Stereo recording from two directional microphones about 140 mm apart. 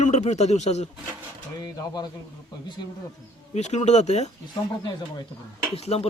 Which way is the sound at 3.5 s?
55° left (ahead or behind).